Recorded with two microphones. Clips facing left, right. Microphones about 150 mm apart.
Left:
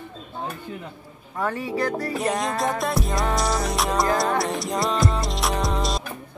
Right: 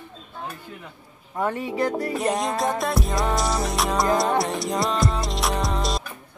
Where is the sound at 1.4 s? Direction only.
20° right (ahead or behind).